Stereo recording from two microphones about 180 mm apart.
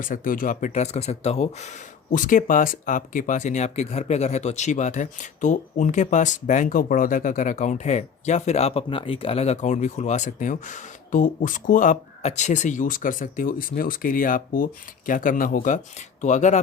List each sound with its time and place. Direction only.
0.0 s speech: 50° left (ahead or behind)